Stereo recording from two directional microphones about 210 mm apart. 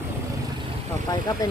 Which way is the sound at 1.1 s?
15° left (ahead or behind).